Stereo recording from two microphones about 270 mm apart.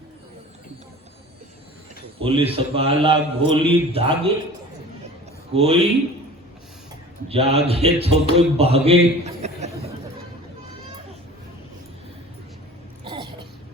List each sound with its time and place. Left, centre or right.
2.1 s a man's voice: right
5.5 s a man's voice: right
7.3 s a man's voice: right
13.1 s a sound: centre